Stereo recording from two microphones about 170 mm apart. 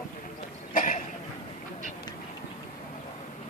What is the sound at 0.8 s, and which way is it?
Cough, 50° left (ahead or behind).